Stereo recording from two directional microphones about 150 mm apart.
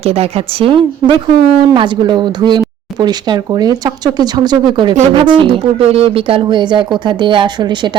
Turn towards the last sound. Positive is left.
turn(degrees=-30)  # may be behind; listen again after turning